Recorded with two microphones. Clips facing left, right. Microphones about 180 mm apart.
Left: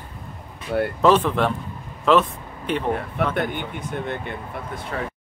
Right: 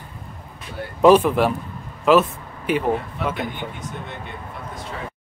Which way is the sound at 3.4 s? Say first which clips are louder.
Left 3 dB; 55° left (ahead or behind).